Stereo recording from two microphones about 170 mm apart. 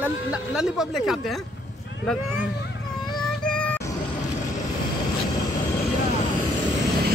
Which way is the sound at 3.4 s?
5° left (ahead or behind).